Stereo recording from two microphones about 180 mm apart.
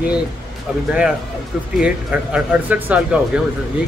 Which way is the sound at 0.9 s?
5° right (ahead or behind).